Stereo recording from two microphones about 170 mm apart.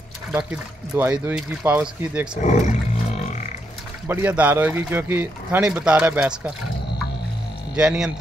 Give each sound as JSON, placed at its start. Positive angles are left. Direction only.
{"t": 0.3, "sound": "speech", "side_deg": -10}
{"t": 2.4, "sound": "speech", "side_deg": 45}
{"t": 4.1, "sound": "speech", "side_deg": -10}
{"t": 7.7, "sound": "speech", "side_deg": -5}